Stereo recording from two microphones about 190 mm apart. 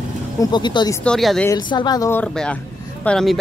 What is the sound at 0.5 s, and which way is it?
Speech, 25° left (ahead or behind).